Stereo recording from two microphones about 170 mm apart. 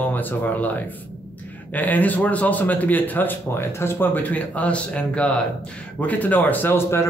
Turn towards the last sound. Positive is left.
turn(degrees=15)  # may be behind; listen again after turning